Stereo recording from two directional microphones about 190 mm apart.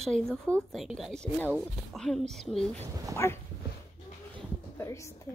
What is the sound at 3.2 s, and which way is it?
Speech, 15° left (ahead or behind).